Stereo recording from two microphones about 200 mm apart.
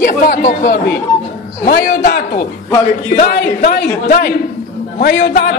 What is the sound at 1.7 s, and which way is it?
Speech, 50° left (ahead or behind).